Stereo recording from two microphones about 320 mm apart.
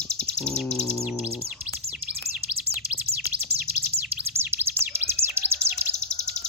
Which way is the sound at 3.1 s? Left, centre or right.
Right.